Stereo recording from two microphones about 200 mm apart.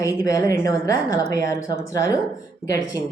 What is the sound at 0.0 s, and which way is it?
Speech, 15° left (ahead or behind).